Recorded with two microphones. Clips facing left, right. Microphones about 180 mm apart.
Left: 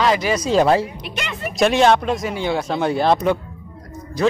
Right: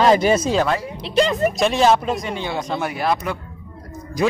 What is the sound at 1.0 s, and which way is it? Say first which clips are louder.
Speech: right 11 dB; 35° right (ahead or behind).